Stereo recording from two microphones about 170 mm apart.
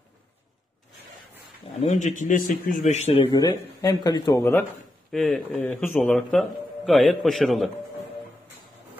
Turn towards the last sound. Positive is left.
turn(degrees=0)  # may be behind; listen again after turning